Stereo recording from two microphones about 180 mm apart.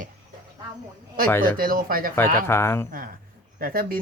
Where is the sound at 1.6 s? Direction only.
55° right (ahead or behind).